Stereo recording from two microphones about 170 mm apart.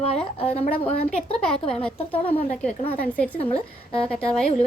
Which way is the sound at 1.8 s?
10° left (ahead or behind).